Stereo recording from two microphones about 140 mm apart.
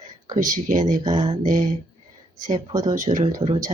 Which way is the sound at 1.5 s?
65° right (ahead or behind).